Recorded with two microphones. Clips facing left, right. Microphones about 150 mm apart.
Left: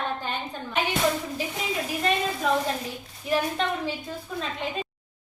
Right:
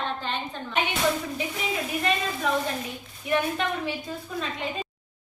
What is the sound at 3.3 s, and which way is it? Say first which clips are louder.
Speech: even; 30° left (ahead or behind).